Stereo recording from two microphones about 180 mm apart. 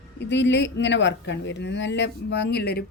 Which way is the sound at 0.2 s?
75° left (ahead or behind).